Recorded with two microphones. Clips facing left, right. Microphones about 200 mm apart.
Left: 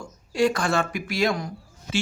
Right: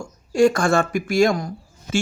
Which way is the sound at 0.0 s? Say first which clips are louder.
Right 6 dB; 45° right (ahead or behind).